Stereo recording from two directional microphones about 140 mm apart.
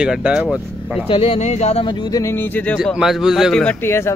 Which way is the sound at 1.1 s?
40° left (ahead or behind).